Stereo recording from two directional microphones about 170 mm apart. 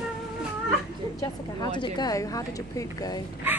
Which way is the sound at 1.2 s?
25° left (ahead or behind).